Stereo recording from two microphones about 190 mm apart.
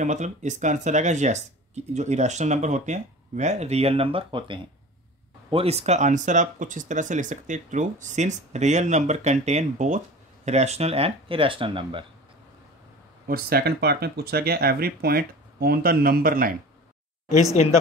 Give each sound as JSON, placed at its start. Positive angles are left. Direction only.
{"t": 0.0, "sound": "speech", "side_deg": -40}
{"t": 13.3, "sound": "speech", "side_deg": -55}
{"t": 17.3, "sound": "speech", "side_deg": -20}